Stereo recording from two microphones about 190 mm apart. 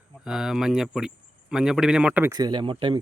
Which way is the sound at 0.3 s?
5° right (ahead or behind).